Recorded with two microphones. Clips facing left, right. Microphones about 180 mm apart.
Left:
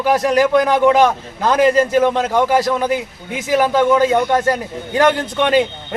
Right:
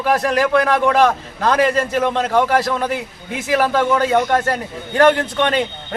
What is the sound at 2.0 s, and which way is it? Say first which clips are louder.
Speech: left 2 dB; 10° left (ahead or behind).